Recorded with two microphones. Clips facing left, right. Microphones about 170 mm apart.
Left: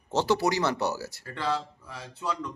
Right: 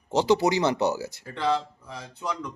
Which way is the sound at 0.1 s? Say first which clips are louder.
Right 4 dB; 15° right (ahead or behind).